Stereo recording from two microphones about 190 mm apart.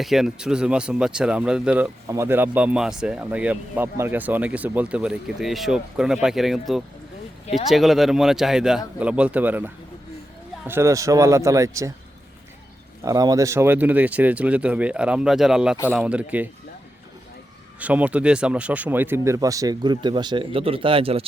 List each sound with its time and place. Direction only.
0.0 s speech: centre (ahead or behind)
13.1 s speech: 20° right (ahead or behind)
17.7 s speech: 5° right (ahead or behind); by 21.2 s 30° right (ahead or behind)